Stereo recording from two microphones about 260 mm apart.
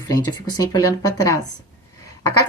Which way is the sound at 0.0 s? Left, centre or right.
Centre.